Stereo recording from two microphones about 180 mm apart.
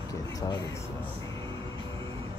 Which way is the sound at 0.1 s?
20° left (ahead or behind).